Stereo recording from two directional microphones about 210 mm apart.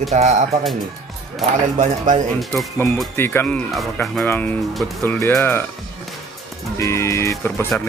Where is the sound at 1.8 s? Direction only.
35° right (ahead or behind).